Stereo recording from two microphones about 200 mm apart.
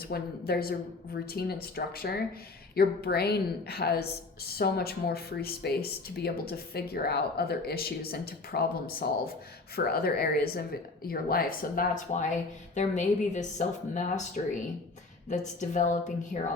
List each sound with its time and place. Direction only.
0.0 s speech: 50° left (ahead or behind)
15.3 s speech: 35° left (ahead or behind)